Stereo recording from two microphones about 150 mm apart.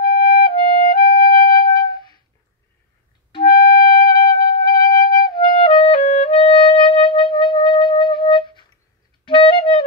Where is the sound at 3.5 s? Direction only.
90° left.